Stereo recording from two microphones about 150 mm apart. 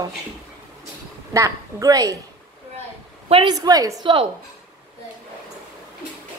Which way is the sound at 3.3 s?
35° right (ahead or behind).